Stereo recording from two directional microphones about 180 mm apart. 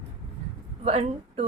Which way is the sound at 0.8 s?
35° right (ahead or behind).